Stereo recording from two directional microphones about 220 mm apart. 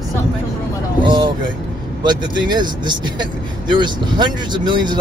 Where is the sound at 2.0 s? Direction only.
20° right (ahead or behind).